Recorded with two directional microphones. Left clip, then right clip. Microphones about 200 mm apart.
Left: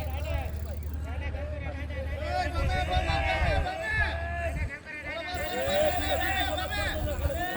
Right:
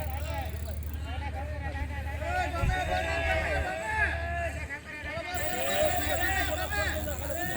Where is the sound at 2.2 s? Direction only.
65° left (ahead or behind).